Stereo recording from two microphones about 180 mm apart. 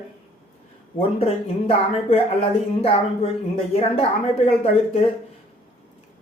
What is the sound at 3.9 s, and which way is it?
Speech, 35° left (ahead or behind).